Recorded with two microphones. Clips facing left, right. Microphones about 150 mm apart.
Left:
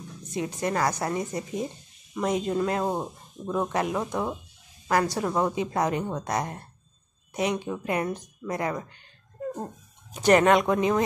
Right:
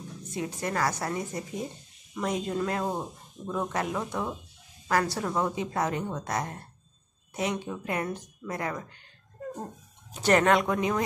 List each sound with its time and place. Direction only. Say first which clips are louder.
0.3 s a woman's voice: left 4 dB; 20° left (ahead or behind)
10.2 s speech: left 3 dB; 15° left (ahead or behind)